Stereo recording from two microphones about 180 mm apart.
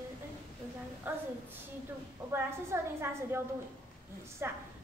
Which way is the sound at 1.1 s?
10° right (ahead or behind).